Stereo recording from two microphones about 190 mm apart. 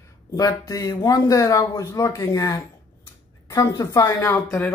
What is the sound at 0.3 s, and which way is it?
Speech, 20° left (ahead or behind).